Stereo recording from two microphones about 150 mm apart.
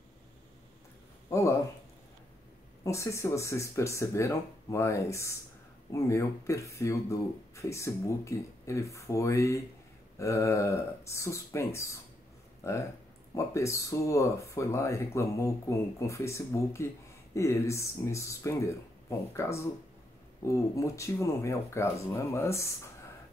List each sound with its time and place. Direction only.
1.3 s speech: 20° left (ahead or behind)
2.8 s speech: 20° left (ahead or behind)